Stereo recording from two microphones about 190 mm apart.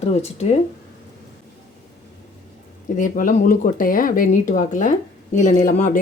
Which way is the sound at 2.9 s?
45° left (ahead or behind).